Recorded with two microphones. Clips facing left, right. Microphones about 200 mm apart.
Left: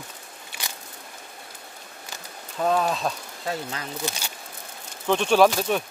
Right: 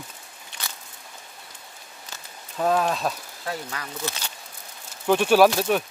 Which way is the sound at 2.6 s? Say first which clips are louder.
Right 1 dB; centre (ahead or behind).